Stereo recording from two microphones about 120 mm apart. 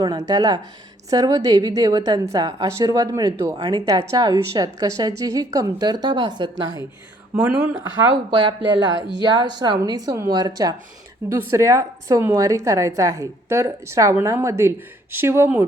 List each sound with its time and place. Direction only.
0.0 s a woman's voice: 30° right (ahead or behind)
7.5 s a woman's voice: 20° right (ahead or behind)
8.3 s a woman's voice: 45° right (ahead or behind); by 15.4 s 20° right (ahead or behind)